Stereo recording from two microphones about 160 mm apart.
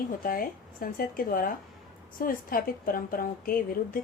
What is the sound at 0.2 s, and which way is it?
A woman's voice, 60° left (ahead or behind).